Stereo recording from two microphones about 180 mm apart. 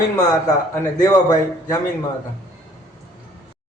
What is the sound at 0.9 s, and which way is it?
Speech, 20° left (ahead or behind).